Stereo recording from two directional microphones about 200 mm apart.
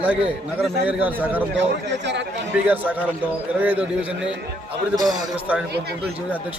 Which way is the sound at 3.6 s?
5° right (ahead or behind).